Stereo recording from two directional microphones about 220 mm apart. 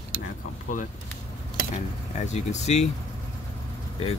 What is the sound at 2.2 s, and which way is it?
Speech, 30° left (ahead or behind).